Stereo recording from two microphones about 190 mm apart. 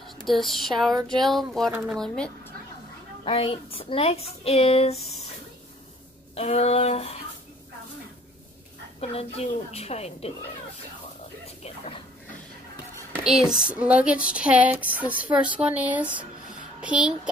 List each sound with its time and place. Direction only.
0.2 s speech: centre (ahead or behind)
3.3 s speech: 30° left (ahead or behind)
6.3 s speech: 35° left (ahead or behind)
9.0 s speech: 35° left (ahead or behind)
11.4 s a sound: 30° left (ahead or behind)
13.1 s speech: 5° right (ahead or behind)